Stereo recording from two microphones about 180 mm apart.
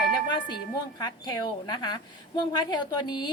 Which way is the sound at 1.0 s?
25° left (ahead or behind).